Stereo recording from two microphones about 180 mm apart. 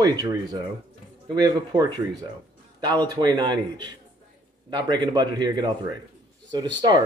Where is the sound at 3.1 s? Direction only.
25° right (ahead or behind).